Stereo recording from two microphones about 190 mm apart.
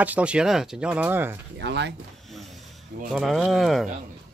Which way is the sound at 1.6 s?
65° right (ahead or behind).